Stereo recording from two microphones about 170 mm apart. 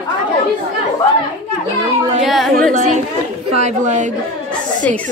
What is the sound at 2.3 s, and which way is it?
Speech, centre (ahead or behind).